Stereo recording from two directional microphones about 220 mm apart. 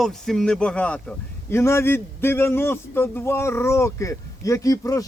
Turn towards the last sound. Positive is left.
turn(degrees=15)  # may be behind; listen again after turning